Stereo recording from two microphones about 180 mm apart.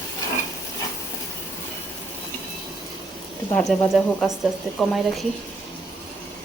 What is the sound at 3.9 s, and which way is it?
Speech, centre (ahead or behind).